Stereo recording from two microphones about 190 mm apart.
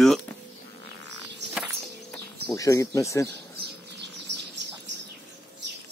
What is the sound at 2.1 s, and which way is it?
Speech, 15° left (ahead or behind).